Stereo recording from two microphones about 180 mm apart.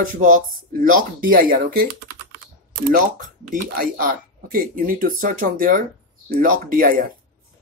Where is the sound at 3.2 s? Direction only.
50° right (ahead or behind).